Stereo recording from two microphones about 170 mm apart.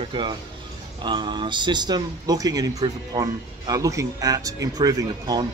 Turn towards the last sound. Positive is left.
turn(degrees=-20)  # may be behind; listen again after turning